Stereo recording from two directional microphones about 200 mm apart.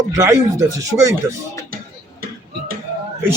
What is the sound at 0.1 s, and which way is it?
A man's voice, 15° right (ahead or behind).